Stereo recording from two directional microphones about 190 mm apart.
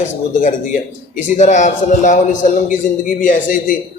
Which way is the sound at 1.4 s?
40° left (ahead or behind).